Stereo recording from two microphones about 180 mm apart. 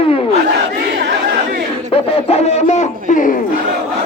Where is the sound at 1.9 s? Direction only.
35° left (ahead or behind).